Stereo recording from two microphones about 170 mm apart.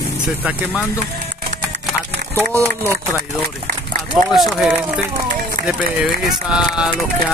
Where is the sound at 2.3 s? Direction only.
15° right (ahead or behind).